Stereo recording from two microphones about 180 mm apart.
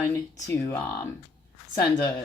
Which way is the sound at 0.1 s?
15° left (ahead or behind).